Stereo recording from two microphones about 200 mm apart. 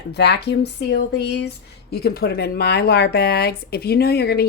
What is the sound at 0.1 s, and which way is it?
Speech, 55° left (ahead or behind).